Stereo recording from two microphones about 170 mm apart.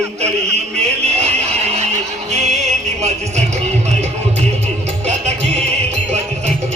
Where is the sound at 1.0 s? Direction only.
40° right (ahead or behind).